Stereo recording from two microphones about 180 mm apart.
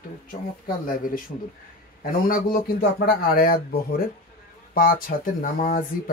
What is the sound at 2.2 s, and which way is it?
Speech, 55° left (ahead or behind).